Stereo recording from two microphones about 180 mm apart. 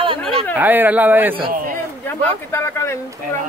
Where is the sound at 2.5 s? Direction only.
15° left (ahead or behind).